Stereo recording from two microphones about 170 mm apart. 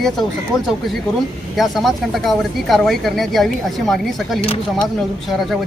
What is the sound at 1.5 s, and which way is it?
Speech, centre (ahead or behind).